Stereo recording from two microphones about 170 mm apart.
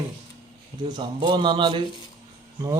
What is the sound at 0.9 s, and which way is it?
Speech, 25° right (ahead or behind).